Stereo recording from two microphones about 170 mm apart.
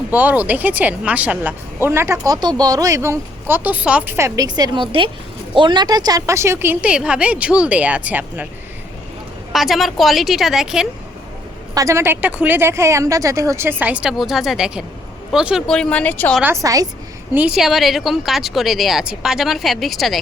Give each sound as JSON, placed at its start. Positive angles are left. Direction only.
{"t": 0.1, "sound": "speech", "side_deg": -10}
{"t": 9.5, "sound": "a woman's voice", "side_deg": 0}
{"t": 11.7, "sound": "a woman's voice", "side_deg": -20}
{"t": 16.4, "sound": "a woman's voice", "side_deg": -15}
{"t": 17.3, "sound": "a woman's voice", "side_deg": -5}